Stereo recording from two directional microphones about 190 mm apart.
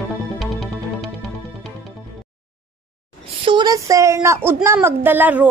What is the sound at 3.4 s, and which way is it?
A woman's voice, 20° right (ahead or behind).